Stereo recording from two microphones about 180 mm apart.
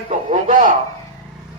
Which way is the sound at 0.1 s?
45° right (ahead or behind).